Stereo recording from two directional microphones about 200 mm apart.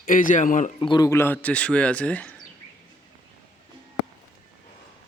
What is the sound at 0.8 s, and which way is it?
Speech, 20° left (ahead or behind).